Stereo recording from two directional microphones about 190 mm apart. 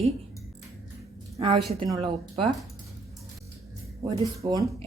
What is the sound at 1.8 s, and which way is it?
Speech, centre (ahead or behind).